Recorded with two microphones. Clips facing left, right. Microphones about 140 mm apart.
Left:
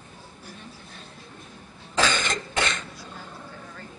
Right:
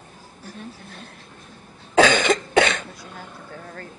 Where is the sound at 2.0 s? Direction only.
65° right (ahead or behind).